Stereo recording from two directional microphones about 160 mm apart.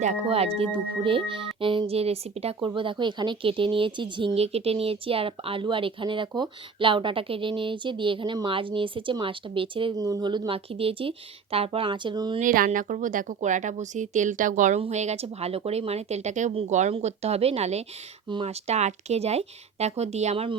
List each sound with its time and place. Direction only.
0.0 s speech: 45° right (ahead or behind)
12.4 s speech: 55° right (ahead or behind); by 20.6 s 40° right (ahead or behind)